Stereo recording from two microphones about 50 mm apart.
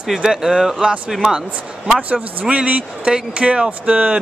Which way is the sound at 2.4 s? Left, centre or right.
Right.